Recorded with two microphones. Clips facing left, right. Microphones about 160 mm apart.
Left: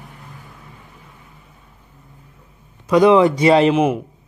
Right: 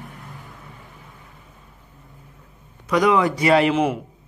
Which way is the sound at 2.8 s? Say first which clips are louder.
Left 6 dB; 25° left (ahead or behind).